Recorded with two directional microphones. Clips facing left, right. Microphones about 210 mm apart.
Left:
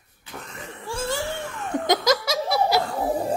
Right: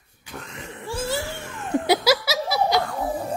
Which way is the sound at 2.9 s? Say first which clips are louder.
Left 3 dB; 30° left (ahead or behind).